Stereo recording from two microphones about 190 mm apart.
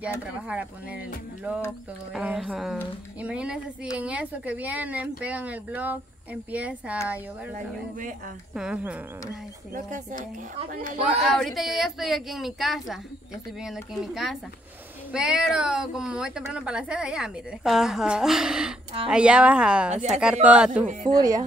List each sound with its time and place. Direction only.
0.0 s speech: 5° right (ahead or behind)
8.5 s speech: 5° right (ahead or behind)
9.8 s a woman's voice: 40° right (ahead or behind)
11.1 s speech: centre (ahead or behind)
21.2 s speech: 20° right (ahead or behind)